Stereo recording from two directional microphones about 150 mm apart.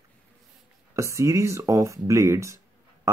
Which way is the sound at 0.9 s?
20° right (ahead or behind).